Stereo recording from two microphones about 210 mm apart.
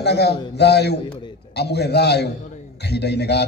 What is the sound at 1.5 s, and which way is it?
A man's voice, 50° left (ahead or behind).